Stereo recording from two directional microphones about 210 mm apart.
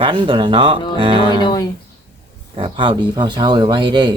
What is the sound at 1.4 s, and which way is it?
Speech, 20° left (ahead or behind).